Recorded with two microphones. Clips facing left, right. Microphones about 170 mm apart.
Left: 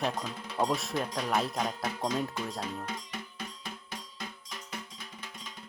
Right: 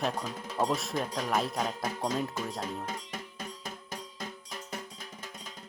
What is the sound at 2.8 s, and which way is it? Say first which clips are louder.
Music: right 1 dB; 45° right (ahead or behind).